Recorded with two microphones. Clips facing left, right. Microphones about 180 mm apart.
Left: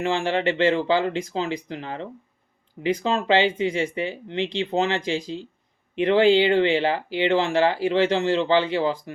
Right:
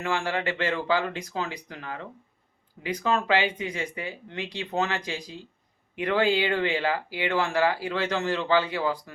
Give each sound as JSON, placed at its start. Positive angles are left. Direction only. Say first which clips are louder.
{"t": 0.0, "sound": "speech", "louder": "left 5 dB", "side_deg": 25}